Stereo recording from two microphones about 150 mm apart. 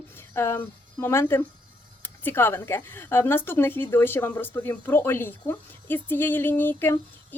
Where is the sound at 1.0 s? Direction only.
15° left (ahead or behind).